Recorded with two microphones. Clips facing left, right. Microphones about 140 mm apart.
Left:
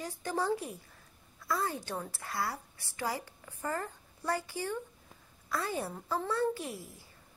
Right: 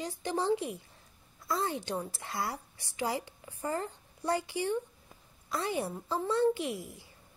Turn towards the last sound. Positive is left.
turn(degrees=-20)  # may be behind; listen again after turning